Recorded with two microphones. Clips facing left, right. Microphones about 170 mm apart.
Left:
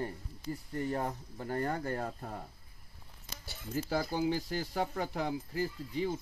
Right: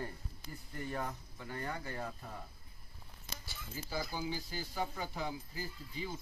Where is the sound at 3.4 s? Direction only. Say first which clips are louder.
Left 12 dB; 70° left (ahead or behind).